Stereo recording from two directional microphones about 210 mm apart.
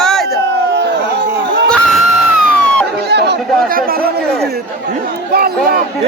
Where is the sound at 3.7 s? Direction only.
45° right (ahead or behind).